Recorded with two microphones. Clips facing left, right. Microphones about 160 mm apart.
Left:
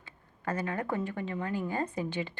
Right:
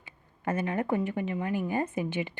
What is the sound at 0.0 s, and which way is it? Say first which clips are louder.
Speech: right 4 dB; 20° right (ahead or behind).